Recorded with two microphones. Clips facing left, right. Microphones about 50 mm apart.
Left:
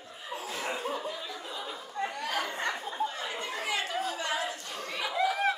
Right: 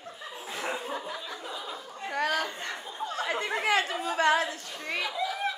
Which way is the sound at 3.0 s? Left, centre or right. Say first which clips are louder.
Right 5 dB; right.